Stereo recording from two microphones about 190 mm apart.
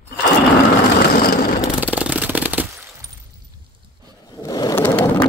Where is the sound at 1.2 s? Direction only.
50° left (ahead or behind).